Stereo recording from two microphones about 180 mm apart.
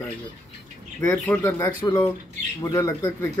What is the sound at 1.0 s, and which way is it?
Speech, 15° left (ahead or behind).